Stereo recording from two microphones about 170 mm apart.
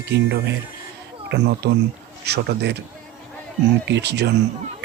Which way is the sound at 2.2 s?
75° right (ahead or behind).